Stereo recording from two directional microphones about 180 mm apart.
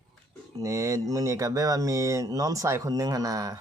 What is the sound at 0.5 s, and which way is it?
Speech, 20° right (ahead or behind).